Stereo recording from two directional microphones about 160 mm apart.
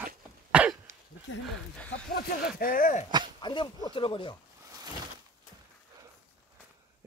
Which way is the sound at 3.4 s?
30° left (ahead or behind).